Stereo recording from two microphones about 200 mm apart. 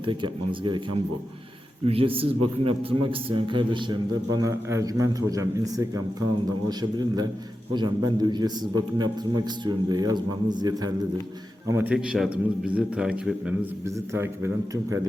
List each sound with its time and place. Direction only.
0.0 s a man's voice: 25° right (ahead or behind)
1.8 s a man's voice: 30° right (ahead or behind)
7.7 s a man's voice: 20° right (ahead or behind)
11.7 s a man's voice: 10° right (ahead or behind)